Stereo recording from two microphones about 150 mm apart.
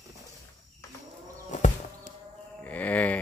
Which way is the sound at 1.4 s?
55° left (ahead or behind).